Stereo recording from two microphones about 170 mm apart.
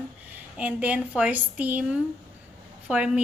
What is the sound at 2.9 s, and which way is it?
Speech, 5° right (ahead or behind).